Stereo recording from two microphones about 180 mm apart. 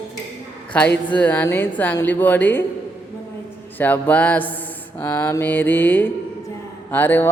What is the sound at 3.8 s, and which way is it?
A man's voice, 10° left (ahead or behind).